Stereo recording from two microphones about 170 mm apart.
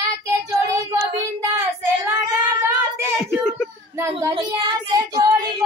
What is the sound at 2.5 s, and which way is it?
Speech, 15° right (ahead or behind).